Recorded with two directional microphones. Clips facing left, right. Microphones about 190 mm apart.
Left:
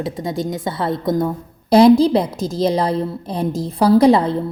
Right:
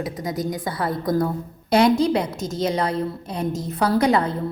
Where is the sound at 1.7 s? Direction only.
35° left (ahead or behind).